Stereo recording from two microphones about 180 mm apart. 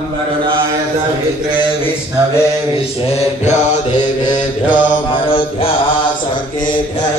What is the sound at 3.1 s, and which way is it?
Mantra, 40° left (ahead or behind).